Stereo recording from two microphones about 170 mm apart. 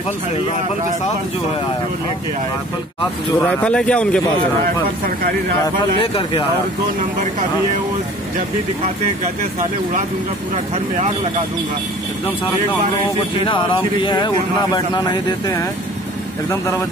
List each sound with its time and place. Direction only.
3.3 s a man's voice: 5° left (ahead or behind)
13.5 s speech: 30° left (ahead or behind)
16.4 s a man's voice: 15° left (ahead or behind)